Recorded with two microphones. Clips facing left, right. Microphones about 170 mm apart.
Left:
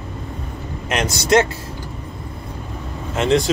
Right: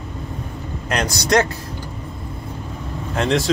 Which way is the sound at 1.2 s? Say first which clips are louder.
Left 2 dB; 25° left (ahead or behind).